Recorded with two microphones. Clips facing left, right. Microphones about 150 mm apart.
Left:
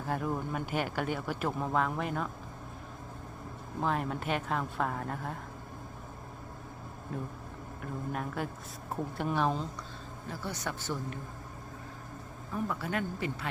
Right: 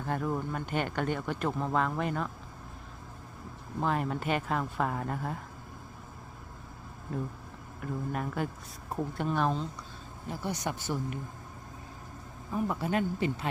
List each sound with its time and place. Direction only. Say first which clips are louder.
0.0 s speech: right 1 dB; centre (ahead or behind)
3.8 s speech: right 2 dB; centre (ahead or behind)
7.1 s speech: right 3 dB; centre (ahead or behind)
10.2 s speech: right 4 dB; 15° right (ahead or behind)
12.5 s speech: right 4 dB; 20° right (ahead or behind)